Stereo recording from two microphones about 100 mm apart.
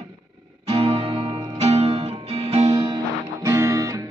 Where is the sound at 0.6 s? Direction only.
80° right.